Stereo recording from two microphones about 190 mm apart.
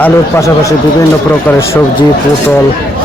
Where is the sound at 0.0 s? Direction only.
15° left (ahead or behind).